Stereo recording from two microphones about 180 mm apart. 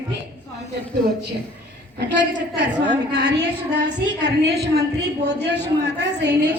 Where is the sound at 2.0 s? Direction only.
70° right (ahead or behind).